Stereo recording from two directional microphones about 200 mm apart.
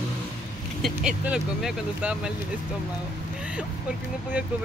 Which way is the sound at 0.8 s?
Centre (ahead or behind).